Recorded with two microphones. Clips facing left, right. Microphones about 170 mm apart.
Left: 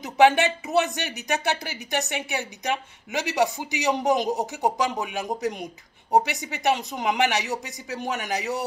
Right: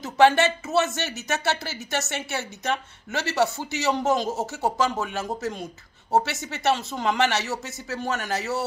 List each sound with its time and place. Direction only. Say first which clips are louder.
0.0 s speech: even; 15° left (ahead or behind)